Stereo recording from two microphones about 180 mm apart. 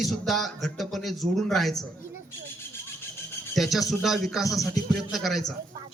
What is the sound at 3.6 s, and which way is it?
Speech, centre (ahead or behind).